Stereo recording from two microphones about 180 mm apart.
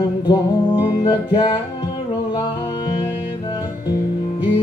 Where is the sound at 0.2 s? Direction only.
25° left (ahead or behind).